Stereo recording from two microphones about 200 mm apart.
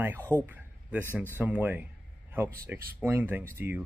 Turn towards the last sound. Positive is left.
turn(degrees=-10)  # may be behind; listen again after turning